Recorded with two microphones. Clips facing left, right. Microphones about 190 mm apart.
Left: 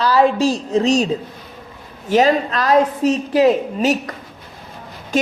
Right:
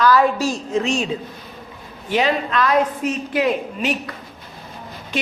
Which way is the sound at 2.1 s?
40° left (ahead or behind).